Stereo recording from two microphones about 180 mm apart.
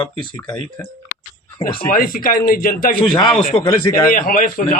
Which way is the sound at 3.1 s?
25° left (ahead or behind).